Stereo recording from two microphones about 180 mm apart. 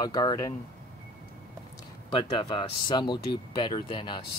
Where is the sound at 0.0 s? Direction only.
20° left (ahead or behind).